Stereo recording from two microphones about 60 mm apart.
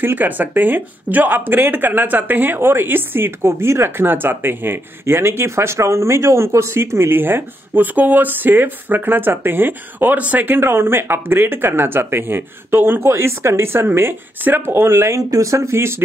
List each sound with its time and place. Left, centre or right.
0.0 s speech: right
15.1 s speech: right